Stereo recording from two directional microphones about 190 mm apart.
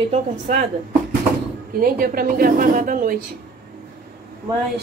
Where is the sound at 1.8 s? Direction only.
50° right (ahead or behind).